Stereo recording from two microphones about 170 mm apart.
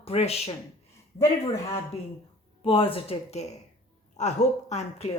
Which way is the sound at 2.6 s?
30° left (ahead or behind).